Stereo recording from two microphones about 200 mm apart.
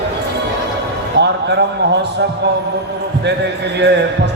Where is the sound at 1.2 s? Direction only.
60° right (ahead or behind).